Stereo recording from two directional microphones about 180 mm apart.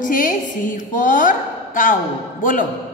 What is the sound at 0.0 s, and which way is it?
A woman's voice, 50° left (ahead or behind).